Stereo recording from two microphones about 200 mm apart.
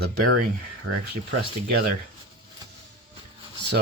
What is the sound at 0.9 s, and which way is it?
Speech, 90° right.